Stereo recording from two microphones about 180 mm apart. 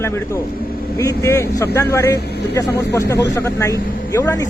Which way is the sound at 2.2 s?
65° left (ahead or behind).